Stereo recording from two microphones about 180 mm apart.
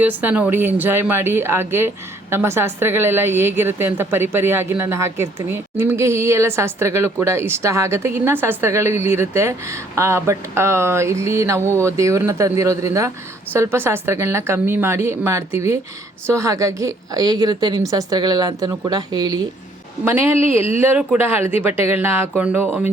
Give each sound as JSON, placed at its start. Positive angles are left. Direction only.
{"t": 0.0, "sound": "a woman's voice", "side_deg": -10}